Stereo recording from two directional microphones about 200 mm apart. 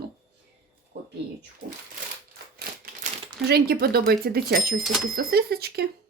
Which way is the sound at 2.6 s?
45° right (ahead or behind).